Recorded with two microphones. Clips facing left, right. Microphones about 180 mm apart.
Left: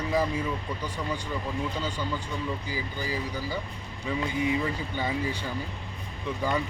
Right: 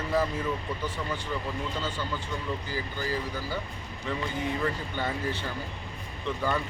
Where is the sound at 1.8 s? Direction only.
15° left (ahead or behind).